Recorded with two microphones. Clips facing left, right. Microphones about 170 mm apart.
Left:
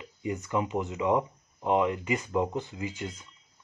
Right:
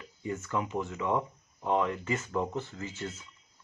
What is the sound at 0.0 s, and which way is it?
Speech, 15° left (ahead or behind).